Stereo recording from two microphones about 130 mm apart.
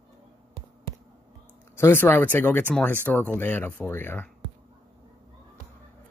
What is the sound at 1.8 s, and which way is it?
Speech, 15° left (ahead or behind).